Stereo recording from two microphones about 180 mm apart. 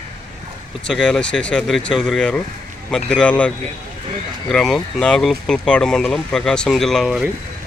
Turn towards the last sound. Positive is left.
turn(degrees=0)  # may be behind; listen again after turning